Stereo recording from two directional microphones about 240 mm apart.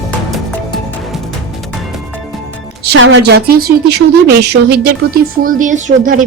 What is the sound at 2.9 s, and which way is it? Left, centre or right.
Speech, right.